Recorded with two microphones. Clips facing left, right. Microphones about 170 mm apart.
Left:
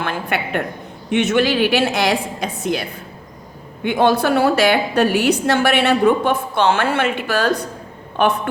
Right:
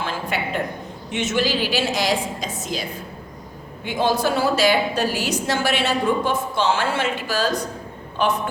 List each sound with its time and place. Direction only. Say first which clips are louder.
0.0 s a sound: left 3 dB; 60° left (ahead or behind)
1.1 s a woman's voice: left 6 dB; 60° left (ahead or behind)
3.8 s a woman's voice: left 5 dB; 60° left (ahead or behind)